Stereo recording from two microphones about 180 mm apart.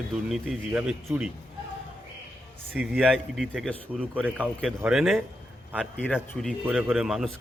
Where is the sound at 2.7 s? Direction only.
5° right (ahead or behind).